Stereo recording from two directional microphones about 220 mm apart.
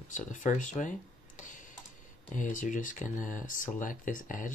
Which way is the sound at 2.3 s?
35° left (ahead or behind).